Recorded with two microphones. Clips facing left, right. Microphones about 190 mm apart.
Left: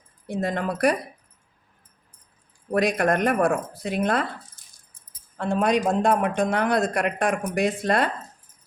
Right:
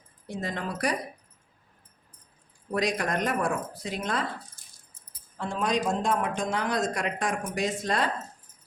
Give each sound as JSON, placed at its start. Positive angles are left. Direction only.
{"t": 0.3, "sound": "a man's voice", "side_deg": 55}
{"t": 2.7, "sound": "a man's voice", "side_deg": 55}
{"t": 5.4, "sound": "a man's voice", "side_deg": 60}